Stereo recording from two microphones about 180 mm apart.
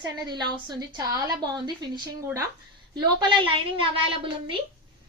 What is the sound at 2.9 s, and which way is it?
A woman's voice, 25° right (ahead or behind).